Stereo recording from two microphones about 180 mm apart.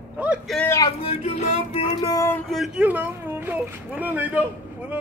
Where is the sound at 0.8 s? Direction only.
30° left (ahead or behind).